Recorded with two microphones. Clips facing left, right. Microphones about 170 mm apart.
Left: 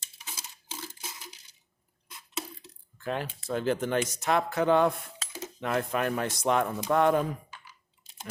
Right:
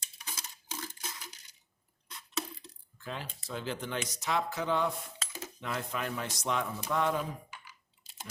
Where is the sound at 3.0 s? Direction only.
55° left (ahead or behind).